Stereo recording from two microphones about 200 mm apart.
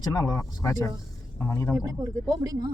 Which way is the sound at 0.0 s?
20° left (ahead or behind).